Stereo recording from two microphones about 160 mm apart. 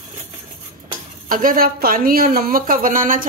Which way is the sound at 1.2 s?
60° right (ahead or behind).